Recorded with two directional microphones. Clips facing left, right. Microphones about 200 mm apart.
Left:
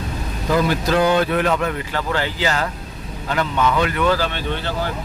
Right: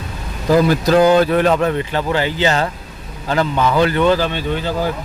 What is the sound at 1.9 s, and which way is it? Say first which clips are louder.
Speech: right 4 dB; 20° right (ahead or behind).